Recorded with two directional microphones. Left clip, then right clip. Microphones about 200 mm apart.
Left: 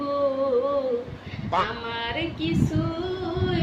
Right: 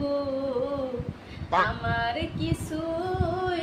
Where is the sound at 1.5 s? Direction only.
Centre (ahead or behind).